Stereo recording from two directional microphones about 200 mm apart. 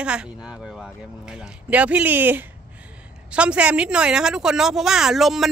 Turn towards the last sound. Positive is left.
turn(degrees=0)  # may be behind; listen again after turning